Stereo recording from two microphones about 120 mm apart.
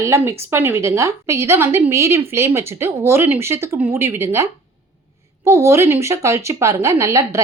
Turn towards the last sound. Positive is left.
turn(degrees=-25)  # may be behind; listen again after turning